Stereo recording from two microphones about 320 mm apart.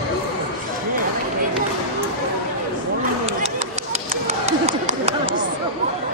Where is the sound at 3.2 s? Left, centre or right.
Right.